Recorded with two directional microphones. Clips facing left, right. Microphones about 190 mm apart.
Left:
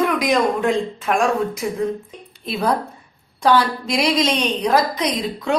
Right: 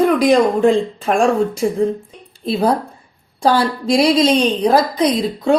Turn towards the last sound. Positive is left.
turn(degrees=-30)  # may be behind; listen again after turning